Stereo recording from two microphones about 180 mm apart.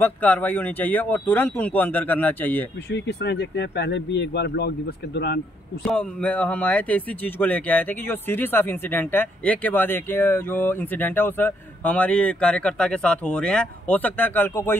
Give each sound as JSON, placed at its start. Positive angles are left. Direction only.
{"t": 0.0, "sound": "speech", "side_deg": 10}
{"t": 2.9, "sound": "speech", "side_deg": 70}
{"t": 5.9, "sound": "speech", "side_deg": 10}